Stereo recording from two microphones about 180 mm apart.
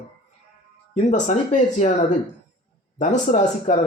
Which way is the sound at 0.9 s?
40° left (ahead or behind).